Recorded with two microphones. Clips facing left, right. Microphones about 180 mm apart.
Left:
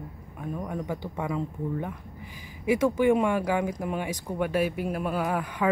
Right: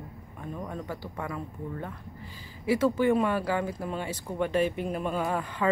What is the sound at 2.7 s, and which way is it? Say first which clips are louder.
Speech: left 2 dB; 15° left (ahead or behind).